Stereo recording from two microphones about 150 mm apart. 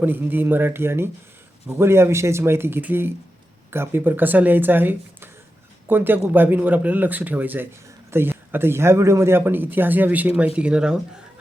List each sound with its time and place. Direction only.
0.0 s speech: 15° right (ahead or behind)